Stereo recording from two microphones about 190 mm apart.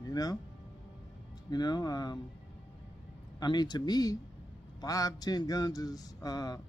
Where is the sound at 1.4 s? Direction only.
20° left (ahead or behind).